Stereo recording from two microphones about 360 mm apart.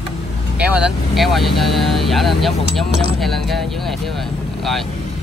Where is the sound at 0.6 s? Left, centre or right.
Centre.